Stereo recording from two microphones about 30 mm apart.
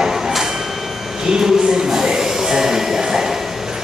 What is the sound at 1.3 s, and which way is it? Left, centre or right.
Speech, centre.